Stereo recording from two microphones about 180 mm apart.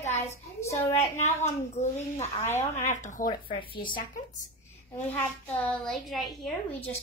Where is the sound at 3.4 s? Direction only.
30° left (ahead or behind).